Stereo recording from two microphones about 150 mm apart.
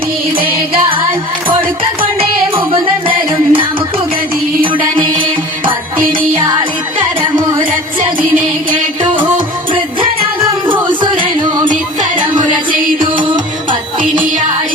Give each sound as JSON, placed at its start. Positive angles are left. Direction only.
{"t": 0.3, "sound": "music", "side_deg": -35}
{"t": 6.3, "sound": "music", "side_deg": -35}
{"t": 10.7, "sound": "music", "side_deg": -30}
{"t": 12.2, "sound": "music", "side_deg": -60}
{"t": 13.0, "sound": "music", "side_deg": -30}